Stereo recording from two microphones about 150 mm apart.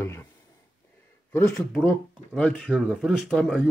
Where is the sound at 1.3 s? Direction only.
15° left (ahead or behind).